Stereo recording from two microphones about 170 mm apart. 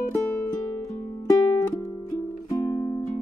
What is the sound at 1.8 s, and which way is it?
Music, 15° left (ahead or behind).